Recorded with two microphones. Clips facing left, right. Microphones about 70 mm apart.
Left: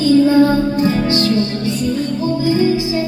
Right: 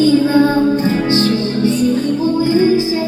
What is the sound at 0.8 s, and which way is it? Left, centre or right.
Music, right.